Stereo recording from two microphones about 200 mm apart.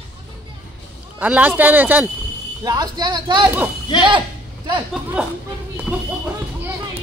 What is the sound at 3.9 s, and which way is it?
Speech, 20° left (ahead or behind).